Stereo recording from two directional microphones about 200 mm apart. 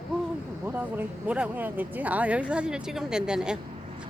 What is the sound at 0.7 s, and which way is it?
Speech, 10° right (ahead or behind).